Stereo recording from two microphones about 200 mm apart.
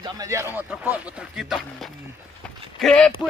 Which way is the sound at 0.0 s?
15° right (ahead or behind).